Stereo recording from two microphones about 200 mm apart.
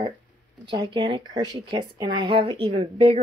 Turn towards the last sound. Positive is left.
turn(degrees=-30)  # may be behind; listen again after turning